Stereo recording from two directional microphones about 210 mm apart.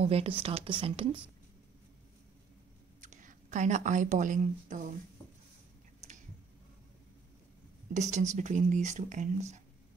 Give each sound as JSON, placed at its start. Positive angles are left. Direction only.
{"t": 0.0, "sound": "speech", "side_deg": -30}
{"t": 3.0, "sound": "a woman's voice", "side_deg": -35}
{"t": 6.0, "sound": "a sound", "side_deg": -35}
{"t": 7.9, "sound": "speech", "side_deg": -35}